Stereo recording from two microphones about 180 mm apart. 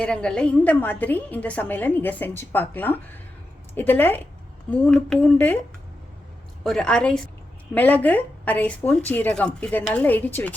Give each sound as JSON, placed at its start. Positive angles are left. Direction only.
{"t": 0.0, "sound": "a woman's voice", "side_deg": 5}
{"t": 6.7, "sound": "a woman's voice", "side_deg": 5}